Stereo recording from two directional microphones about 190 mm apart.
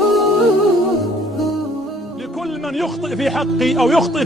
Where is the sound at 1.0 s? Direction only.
Centre (ahead or behind).